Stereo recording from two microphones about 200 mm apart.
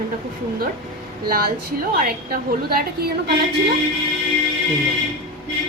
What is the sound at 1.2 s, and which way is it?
A woman's voice, 50° right (ahead or behind).